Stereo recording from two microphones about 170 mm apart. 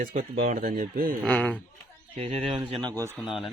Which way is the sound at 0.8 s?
55° right (ahead or behind).